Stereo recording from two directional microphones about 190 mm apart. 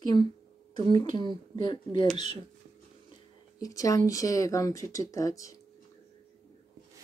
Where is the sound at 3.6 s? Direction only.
20° left (ahead or behind).